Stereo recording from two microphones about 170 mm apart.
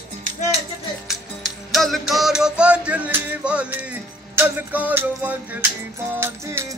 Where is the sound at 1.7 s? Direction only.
Centre (ahead or behind); by 6.7 s 15° right (ahead or behind).